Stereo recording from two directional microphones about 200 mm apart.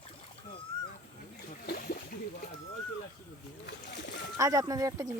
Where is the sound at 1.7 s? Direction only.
50° left (ahead or behind).